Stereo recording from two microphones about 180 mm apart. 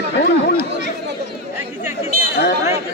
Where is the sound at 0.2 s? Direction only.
60° left (ahead or behind).